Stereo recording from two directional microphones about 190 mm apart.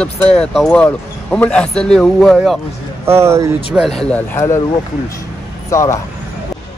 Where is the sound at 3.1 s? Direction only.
15° right (ahead or behind).